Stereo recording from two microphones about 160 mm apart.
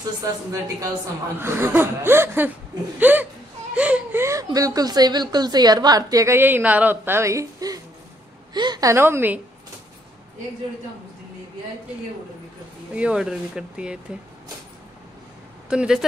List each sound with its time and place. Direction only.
0.5 s speech: 20° right (ahead or behind)
12.9 s speech: 5° right (ahead or behind)
15.7 s speech: 5° right (ahead or behind)